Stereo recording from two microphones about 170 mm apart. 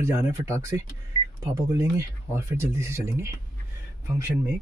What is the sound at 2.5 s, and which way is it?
Speech, 15° right (ahead or behind).